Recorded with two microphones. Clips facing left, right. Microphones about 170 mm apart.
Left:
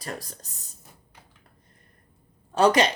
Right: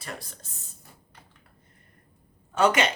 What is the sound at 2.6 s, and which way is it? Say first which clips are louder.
Speech: left 3 dB; 35° left (ahead or behind).